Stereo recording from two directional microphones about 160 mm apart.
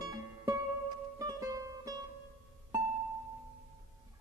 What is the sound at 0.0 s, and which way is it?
Music, 20° right (ahead or behind).